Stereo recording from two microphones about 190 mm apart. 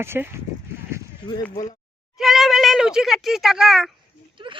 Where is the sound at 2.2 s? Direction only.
Centre (ahead or behind).